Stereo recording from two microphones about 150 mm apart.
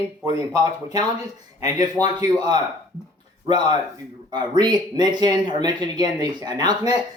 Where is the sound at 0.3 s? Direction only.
25° right (ahead or behind).